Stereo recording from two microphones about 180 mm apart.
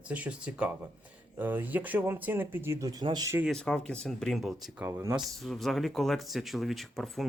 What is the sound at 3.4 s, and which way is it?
Speech, 5° left (ahead or behind).